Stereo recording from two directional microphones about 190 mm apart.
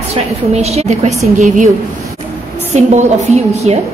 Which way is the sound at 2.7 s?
35° right (ahead or behind).